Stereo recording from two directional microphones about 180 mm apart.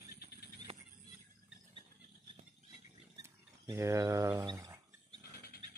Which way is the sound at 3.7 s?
15° right (ahead or behind).